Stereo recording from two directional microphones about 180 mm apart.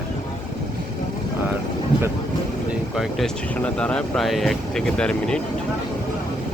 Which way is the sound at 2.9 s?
5° left (ahead or behind).